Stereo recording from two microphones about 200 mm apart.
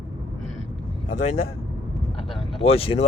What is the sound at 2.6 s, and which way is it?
Speech, 30° left (ahead or behind).